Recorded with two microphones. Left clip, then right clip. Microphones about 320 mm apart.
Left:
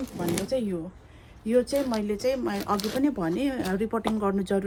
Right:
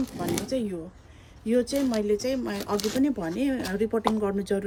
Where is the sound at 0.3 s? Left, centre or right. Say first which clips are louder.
Left 3 dB; centre.